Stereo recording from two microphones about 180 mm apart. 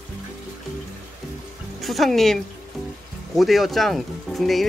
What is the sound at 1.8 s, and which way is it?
Speech, centre (ahead or behind).